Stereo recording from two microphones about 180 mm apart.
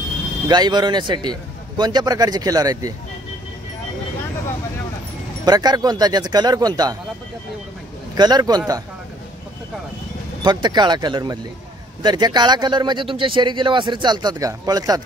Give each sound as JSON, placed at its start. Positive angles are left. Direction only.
{"t": 0.5, "sound": "speech", "side_deg": -25}
{"t": 5.4, "sound": "speech", "side_deg": -20}
{"t": 8.1, "sound": "speech", "side_deg": -20}
{"t": 10.4, "sound": "speech", "side_deg": -25}